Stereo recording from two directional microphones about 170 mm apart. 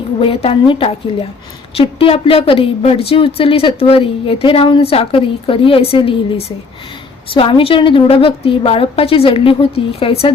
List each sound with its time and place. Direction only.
0.2 s a woman's voice: 35° left (ahead or behind)